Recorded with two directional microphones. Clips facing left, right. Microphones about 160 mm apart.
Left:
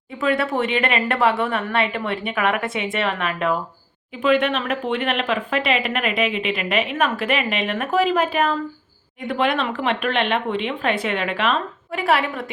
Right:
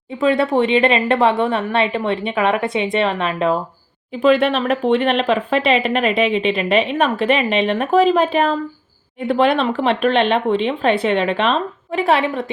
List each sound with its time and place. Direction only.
0.2 s a woman's voice: 25° right (ahead or behind)